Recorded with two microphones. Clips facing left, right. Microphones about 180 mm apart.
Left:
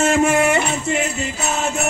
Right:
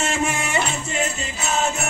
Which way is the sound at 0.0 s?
55° left (ahead or behind).